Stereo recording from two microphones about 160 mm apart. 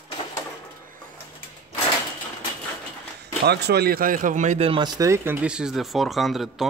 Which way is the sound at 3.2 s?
90° right.